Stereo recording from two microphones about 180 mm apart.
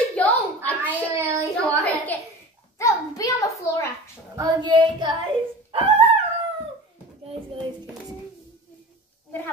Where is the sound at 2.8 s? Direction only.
20° left (ahead or behind).